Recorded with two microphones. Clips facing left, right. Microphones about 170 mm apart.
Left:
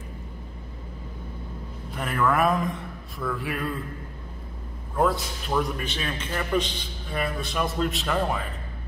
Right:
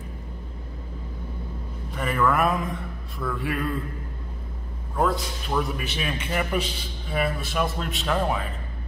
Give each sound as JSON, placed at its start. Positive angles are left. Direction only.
{"t": 2.0, "sound": "a man's voice", "side_deg": 0}
{"t": 4.9, "sound": "a man's voice", "side_deg": 0}